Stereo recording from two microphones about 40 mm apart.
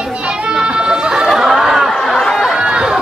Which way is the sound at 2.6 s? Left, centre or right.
Right.